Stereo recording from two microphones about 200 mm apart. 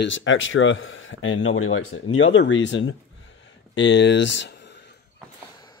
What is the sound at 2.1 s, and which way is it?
Speech, 70° left (ahead or behind).